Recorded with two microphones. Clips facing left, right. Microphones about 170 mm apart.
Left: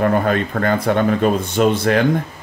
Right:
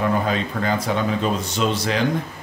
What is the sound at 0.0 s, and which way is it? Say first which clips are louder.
Speech: left 5 dB; 55° left (ahead or behind).